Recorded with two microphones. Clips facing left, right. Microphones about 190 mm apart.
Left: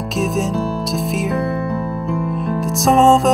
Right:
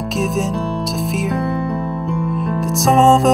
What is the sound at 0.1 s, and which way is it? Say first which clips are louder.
Music: left 1 dB; centre (ahead or behind).